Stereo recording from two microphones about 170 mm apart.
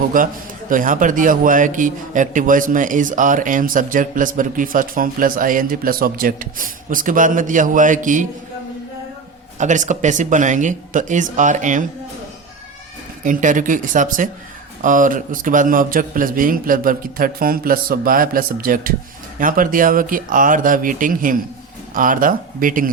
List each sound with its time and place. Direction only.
0.1 s a man's voice: 55° right (ahead or behind)
9.6 s a man's voice: 45° right (ahead or behind)
13.2 s a man's voice: 50° right (ahead or behind)